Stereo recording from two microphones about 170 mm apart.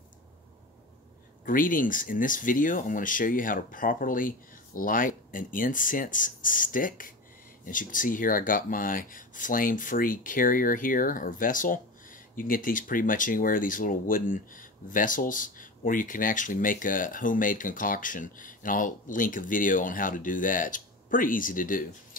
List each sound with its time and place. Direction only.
1.4 s speech: 55° left (ahead or behind)